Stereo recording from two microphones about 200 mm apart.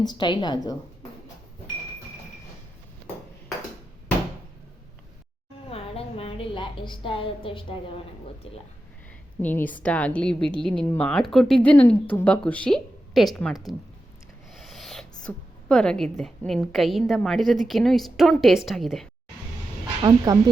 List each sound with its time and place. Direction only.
0.0 s a woman's voice: 20° left (ahead or behind)
5.6 s a sound: 30° left (ahead or behind)
9.4 s a woman's voice: 10° left (ahead or behind)
14.5 s owl: centre (ahead or behind)
15.3 s a woman's voice: 5° left (ahead or behind)
20.0 s speech: 15° right (ahead or behind)